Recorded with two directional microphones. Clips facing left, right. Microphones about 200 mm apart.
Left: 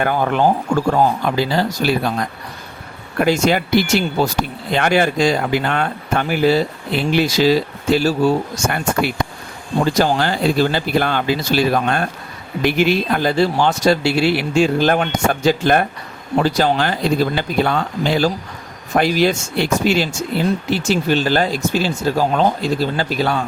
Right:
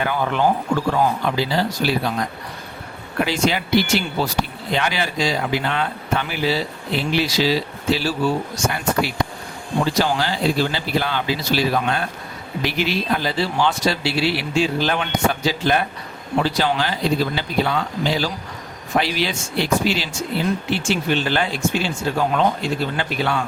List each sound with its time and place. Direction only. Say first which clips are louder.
0.0 s speech: left 4 dB; 50° left (ahead or behind)
3.2 s speech: left 5 dB; 45° left (ahead or behind)